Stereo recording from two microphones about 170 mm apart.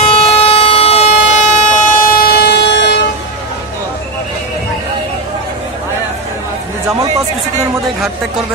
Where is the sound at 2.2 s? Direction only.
70° left (ahead or behind); by 3.0 s 85° left.